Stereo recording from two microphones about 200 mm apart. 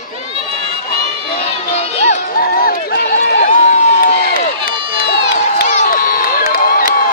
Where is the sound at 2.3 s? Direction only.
45° left (ahead or behind).